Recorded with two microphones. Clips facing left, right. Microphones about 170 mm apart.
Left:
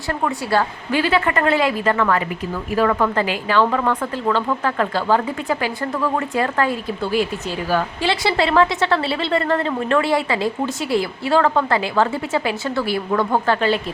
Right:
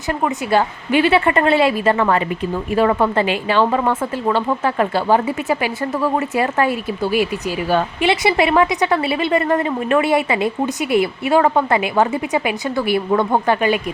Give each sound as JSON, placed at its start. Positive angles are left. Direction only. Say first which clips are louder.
{"t": 0.1, "sound": "a woman's voice", "louder": "right 3 dB", "side_deg": -20}